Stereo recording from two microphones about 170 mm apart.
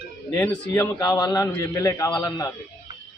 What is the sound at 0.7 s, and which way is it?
A man's voice, 20° left (ahead or behind).